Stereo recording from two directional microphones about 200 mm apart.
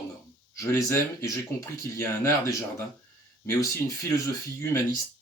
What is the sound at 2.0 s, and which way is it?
Speech, 15° left (ahead or behind).